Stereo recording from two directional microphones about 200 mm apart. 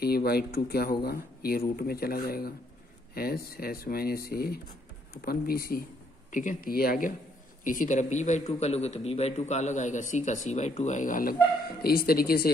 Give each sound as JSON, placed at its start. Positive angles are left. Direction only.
{"t": 0.0, "sound": "a man's voice", "side_deg": 50}